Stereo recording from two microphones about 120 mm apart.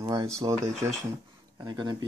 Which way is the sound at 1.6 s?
40° right (ahead or behind).